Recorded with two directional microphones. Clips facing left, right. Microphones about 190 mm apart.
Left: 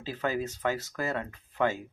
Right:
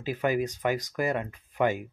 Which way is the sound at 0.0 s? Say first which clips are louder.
Right 4 dB; 15° right (ahead or behind).